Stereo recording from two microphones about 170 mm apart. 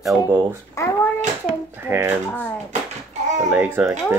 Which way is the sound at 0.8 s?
15° left (ahead or behind).